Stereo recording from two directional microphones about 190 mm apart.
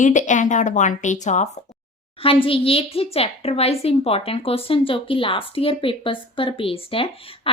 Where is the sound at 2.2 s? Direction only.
30° left (ahead or behind).